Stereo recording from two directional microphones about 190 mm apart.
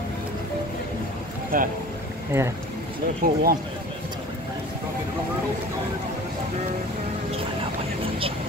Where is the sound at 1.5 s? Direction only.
50° right (ahead or behind).